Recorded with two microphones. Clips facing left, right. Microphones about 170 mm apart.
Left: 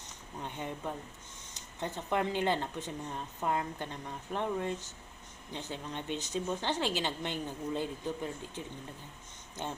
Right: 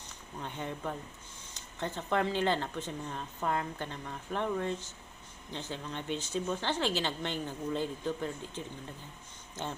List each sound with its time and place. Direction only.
0.4 s speech: 15° left (ahead or behind)